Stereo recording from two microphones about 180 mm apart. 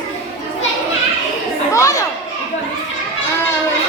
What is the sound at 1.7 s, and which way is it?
Children playing, 15° left (ahead or behind).